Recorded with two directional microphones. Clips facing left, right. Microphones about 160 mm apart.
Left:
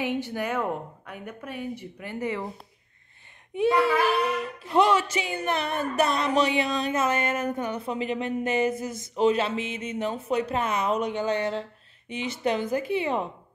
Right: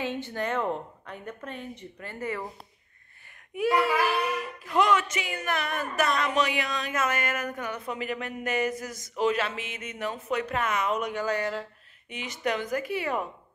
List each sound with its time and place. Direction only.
0.0 s a woman's voice: 10° left (ahead or behind)
3.5 s a child's voice: 25° left (ahead or behind)